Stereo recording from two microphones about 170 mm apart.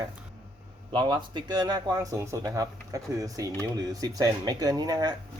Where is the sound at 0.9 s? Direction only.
25° right (ahead or behind).